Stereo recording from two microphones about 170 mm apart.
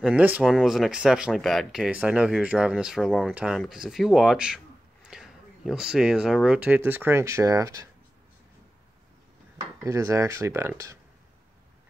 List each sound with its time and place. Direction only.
0.0 s speech: 10° right (ahead or behind)
9.8 s speech: 15° right (ahead or behind)